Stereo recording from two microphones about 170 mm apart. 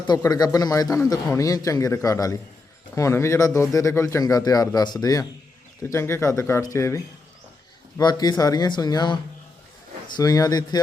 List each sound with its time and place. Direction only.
0.1 s a man's voice: 20° left (ahead or behind)
10.2 s a man's voice: 20° left (ahead or behind)